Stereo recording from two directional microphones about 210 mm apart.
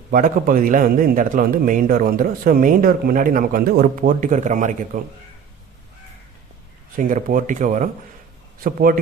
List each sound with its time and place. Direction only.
0.1 s a man's voice: 40° right (ahead or behind)
7.0 s a man's voice: 40° right (ahead or behind)